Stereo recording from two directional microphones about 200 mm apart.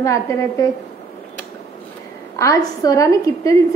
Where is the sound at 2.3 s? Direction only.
15° left (ahead or behind).